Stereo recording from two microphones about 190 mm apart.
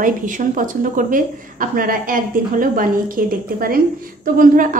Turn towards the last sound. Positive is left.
turn(degrees=-45)  # may be behind; listen again after turning